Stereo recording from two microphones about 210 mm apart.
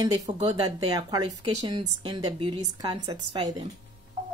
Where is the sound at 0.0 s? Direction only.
25° right (ahead or behind).